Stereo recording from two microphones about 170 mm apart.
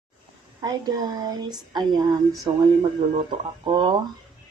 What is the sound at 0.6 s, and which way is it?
Speech, 20° right (ahead or behind).